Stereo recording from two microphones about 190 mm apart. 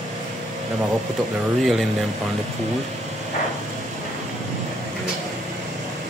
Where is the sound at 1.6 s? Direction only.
Centre (ahead or behind).